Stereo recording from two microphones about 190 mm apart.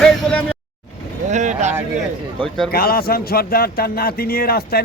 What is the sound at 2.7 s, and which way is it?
A man's voice, 50° left (ahead or behind).